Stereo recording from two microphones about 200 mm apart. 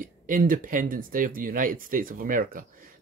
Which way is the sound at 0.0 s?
40° right (ahead or behind).